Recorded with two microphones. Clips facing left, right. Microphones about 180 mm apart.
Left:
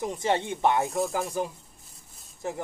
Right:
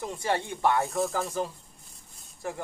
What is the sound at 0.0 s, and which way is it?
Speech, 20° left (ahead or behind).